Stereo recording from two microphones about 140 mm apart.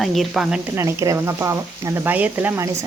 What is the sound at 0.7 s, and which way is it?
Speech, 20° right (ahead or behind).